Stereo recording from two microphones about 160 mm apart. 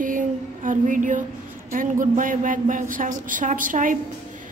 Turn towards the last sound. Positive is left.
turn(degrees=-55)  # may be behind; listen again after turning